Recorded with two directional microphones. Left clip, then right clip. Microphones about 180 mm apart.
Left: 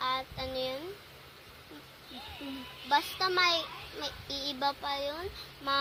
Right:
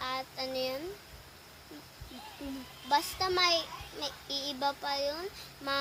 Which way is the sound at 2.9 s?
15° right (ahead or behind).